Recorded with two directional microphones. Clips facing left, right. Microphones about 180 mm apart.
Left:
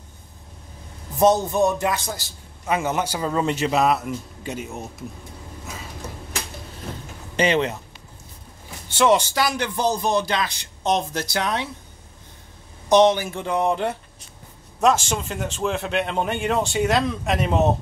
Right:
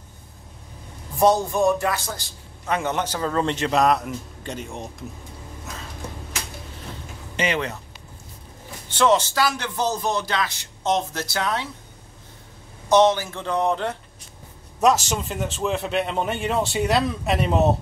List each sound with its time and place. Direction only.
1.2 s speech: 20° left (ahead or behind)
2.1 s a man's voice: 5° left (ahead or behind)
7.3 s speech: 30° left (ahead or behind)
8.9 s a man's voice: 10° left (ahead or behind)
12.9 s a man's voice: 15° left (ahead or behind)
14.8 s speech: centre (ahead or behind)